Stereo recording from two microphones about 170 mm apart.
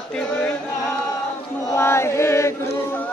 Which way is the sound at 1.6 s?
15° left (ahead or behind).